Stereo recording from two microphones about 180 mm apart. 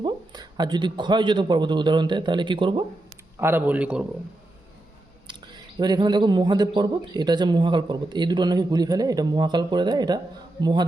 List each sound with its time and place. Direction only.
0.0 s a man's voice: 25° right (ahead or behind)
3.3 s a man's voice: 10° right (ahead or behind)
5.8 s speech: 25° right (ahead or behind)